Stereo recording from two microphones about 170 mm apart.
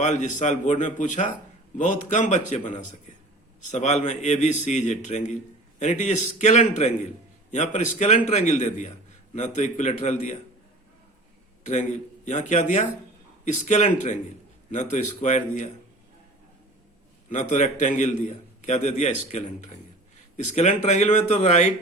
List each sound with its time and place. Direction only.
0.0 s a man's voice: 45° left (ahead or behind)
11.6 s a man's voice: 45° left (ahead or behind)
17.2 s a man's voice: 45° left (ahead or behind)